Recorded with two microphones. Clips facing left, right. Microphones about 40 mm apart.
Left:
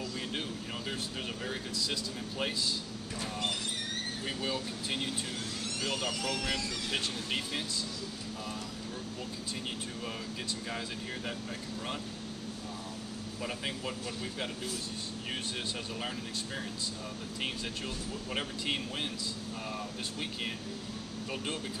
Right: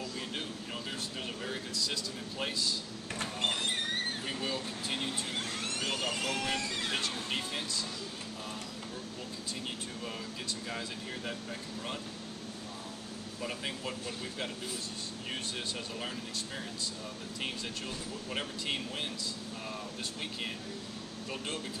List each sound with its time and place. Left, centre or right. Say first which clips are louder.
1.4 s speech: right 1 dB; centre
3.2 s speech: right 2 dB; right
4.3 s speech: left 1 dB; centre
5.6 s vehicle: left 2 dB; right
6.0 s speech: even; right
7.0 s speech: even; centre
13.4 s speech: left 1 dB; centre
18.3 s speech: left 1 dB; centre